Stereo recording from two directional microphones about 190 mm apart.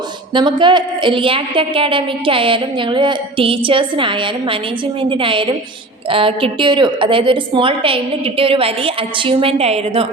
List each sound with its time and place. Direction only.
0.3 s a woman's voice: 25° right (ahead or behind)